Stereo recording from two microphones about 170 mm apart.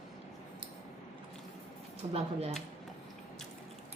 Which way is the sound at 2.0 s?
30° right (ahead or behind).